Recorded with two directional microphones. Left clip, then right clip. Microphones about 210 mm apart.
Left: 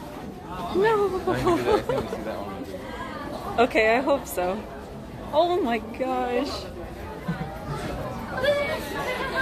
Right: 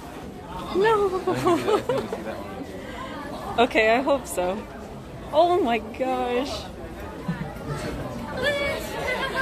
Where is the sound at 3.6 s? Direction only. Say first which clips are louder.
Right 1 dB; 5° right (ahead or behind).